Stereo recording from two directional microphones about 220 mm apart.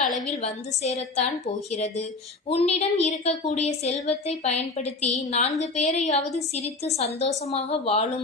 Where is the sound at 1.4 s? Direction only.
30° left (ahead or behind).